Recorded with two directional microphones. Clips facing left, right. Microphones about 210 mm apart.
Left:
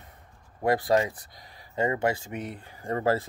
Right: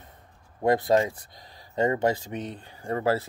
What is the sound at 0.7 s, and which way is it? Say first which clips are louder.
Speech: right 2 dB; 25° right (ahead or behind).